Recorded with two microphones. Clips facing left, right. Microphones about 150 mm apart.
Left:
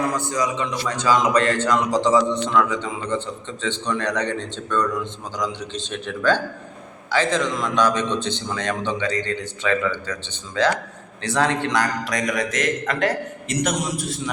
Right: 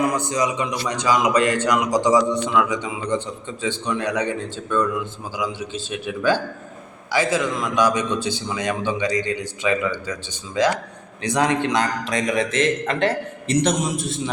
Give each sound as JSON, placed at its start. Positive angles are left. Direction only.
{"t": 0.0, "sound": "a man's voice", "side_deg": -20}